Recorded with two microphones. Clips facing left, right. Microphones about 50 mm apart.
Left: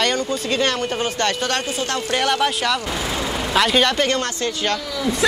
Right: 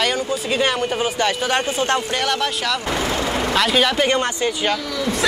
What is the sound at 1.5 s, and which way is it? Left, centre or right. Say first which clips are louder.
Speech: right 4 dB; right.